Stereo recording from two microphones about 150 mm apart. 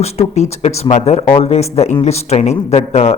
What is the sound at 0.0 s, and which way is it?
Speech, 45° left (ahead or behind).